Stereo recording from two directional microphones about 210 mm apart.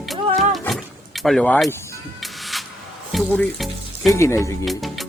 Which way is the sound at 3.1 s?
Centre (ahead or behind).